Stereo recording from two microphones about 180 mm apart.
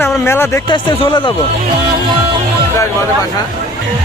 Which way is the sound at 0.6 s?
25° left (ahead or behind).